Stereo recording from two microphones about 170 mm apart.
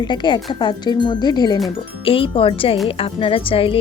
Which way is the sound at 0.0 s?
25° left (ahead or behind).